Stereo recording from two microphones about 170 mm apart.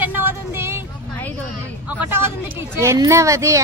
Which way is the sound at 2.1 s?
15° right (ahead or behind).